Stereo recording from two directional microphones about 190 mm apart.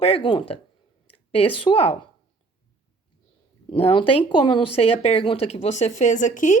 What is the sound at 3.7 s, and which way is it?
Speech, 30° left (ahead or behind).